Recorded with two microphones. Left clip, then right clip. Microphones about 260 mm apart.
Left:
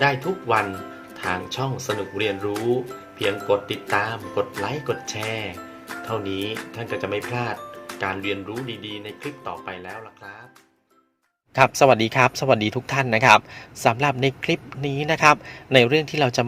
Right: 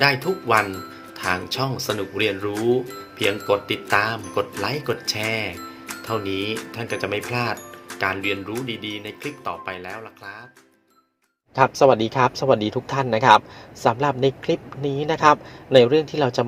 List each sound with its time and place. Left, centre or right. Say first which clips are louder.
0.0 s speech: right 2 dB; centre
11.5 s a man's voice: even; left